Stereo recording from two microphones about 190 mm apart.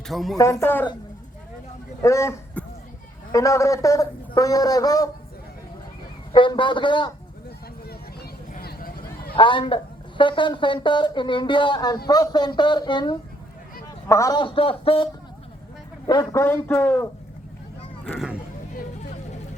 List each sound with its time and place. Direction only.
0.1 s a man's voice: centre (ahead or behind)
2.0 s a man's voice: 15° left (ahead or behind)
6.3 s speech: 25° left (ahead or behind)
8.5 s a sound: 50° left (ahead or behind)
9.3 s speech: 25° left (ahead or behind)
16.3 s a man's voice: 15° left (ahead or behind)